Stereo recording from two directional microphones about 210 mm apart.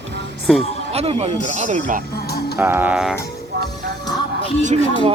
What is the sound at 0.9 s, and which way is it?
Speech, 30° right (ahead or behind).